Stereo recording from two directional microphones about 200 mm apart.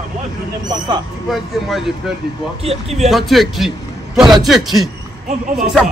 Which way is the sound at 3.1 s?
Centre (ahead or behind).